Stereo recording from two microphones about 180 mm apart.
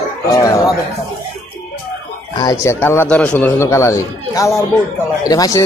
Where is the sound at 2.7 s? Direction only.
10° left (ahead or behind).